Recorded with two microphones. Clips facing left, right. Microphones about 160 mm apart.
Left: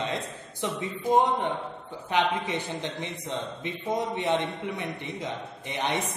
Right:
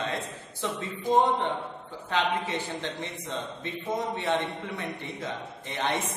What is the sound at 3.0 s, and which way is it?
A man's voice, 15° left (ahead or behind).